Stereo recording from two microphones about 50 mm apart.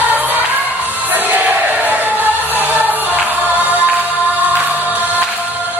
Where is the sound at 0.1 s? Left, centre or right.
Right.